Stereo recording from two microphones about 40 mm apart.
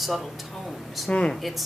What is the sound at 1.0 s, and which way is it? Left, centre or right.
Speech, left.